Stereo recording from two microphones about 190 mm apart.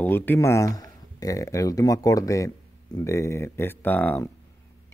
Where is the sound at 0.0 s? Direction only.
10° left (ahead or behind).